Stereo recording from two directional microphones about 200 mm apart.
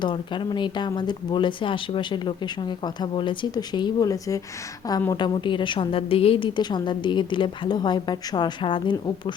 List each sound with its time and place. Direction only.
0.0 s a woman's voice: 25° left (ahead or behind)